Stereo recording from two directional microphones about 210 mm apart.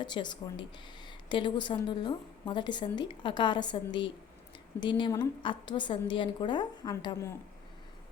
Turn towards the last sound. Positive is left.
turn(degrees=15)  # may be behind; listen again after turning